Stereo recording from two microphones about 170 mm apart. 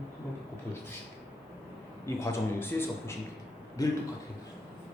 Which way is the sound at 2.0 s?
15° left (ahead or behind).